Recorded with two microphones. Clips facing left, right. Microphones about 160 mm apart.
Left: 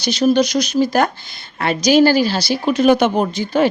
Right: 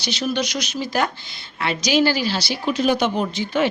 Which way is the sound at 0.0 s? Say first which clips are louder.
Left 9 dB; 40° left (ahead or behind).